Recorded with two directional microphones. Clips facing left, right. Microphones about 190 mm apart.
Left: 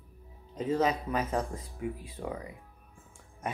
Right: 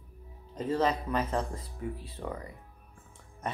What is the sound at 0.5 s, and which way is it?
Speech, 10° left (ahead or behind).